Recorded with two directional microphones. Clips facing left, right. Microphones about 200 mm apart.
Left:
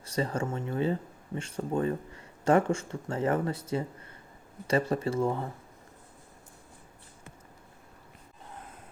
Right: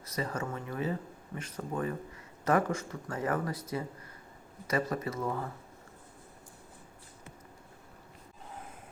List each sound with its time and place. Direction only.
0.0 s speech: 30° left (ahead or behind)